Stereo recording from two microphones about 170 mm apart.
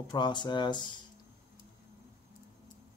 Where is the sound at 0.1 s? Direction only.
25° left (ahead or behind).